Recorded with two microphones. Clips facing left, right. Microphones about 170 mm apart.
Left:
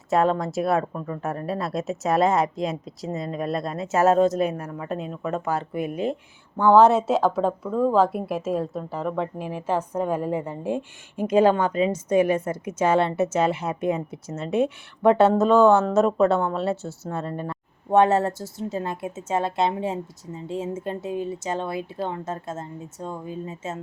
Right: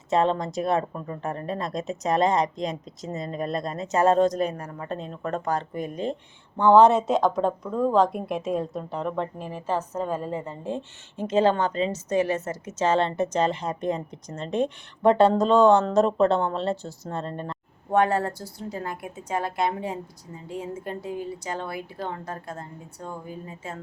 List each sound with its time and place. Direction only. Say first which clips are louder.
0.2 s a woman's voice: left 2 dB; 5° left (ahead or behind)
17.9 s a woman's voice: left 4 dB; 25° left (ahead or behind)